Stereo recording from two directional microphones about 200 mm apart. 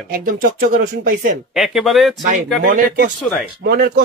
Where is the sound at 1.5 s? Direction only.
Centre (ahead or behind).